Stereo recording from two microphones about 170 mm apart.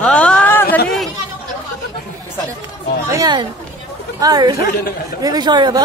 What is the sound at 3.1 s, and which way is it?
Speech, 25° right (ahead or behind).